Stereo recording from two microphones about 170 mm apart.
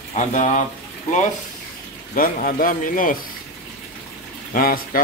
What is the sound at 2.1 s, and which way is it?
A man's voice, 55° left (ahead or behind).